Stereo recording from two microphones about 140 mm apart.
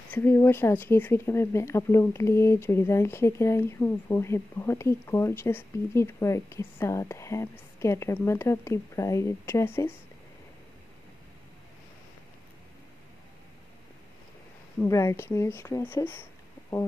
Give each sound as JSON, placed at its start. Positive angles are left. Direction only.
{"t": 0.1, "sound": "speech", "side_deg": 15}
{"t": 14.9, "sound": "speech", "side_deg": 20}